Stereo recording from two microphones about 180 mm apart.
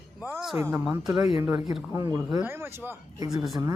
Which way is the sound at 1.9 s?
20° right (ahead or behind).